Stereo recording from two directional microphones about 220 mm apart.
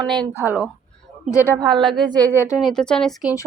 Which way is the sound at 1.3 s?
10° left (ahead or behind).